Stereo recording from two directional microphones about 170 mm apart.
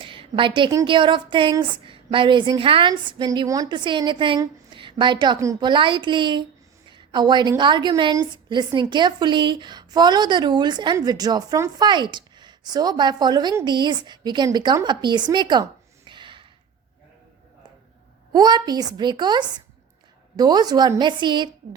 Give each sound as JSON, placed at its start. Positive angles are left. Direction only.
{"t": 0.0, "sound": "a woman's voice", "side_deg": -30}
{"t": 16.0, "sound": "gasp", "side_deg": -30}
{"t": 18.3, "sound": "a woman's voice", "side_deg": -25}